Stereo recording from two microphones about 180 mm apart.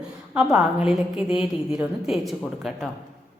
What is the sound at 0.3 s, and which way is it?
A woman's voice, 5° right (ahead or behind).